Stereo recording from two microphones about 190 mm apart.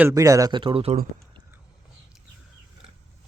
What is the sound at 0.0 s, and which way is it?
Speech, 15° right (ahead or behind).